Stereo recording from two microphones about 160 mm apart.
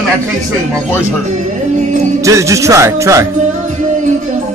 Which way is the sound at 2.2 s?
20° right (ahead or behind).